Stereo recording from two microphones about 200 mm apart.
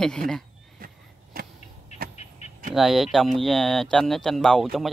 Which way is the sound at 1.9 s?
35° left (ahead or behind).